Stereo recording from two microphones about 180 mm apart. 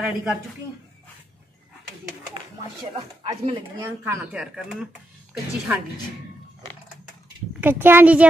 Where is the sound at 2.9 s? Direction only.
35° right (ahead or behind).